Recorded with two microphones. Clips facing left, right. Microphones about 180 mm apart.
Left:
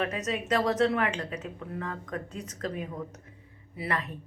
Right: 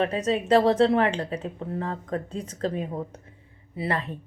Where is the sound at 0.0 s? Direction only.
30° right (ahead or behind).